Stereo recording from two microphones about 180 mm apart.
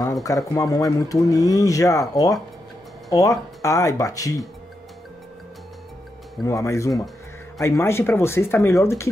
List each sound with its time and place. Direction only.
0.0 s speech: 20° left (ahead or behind)
6.4 s speech: 15° left (ahead or behind)